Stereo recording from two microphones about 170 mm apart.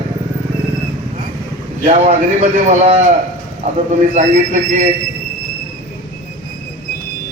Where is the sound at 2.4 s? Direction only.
40° right (ahead or behind).